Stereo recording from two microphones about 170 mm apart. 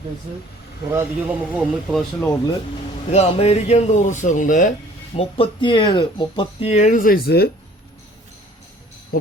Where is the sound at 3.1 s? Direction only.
40° left (ahead or behind).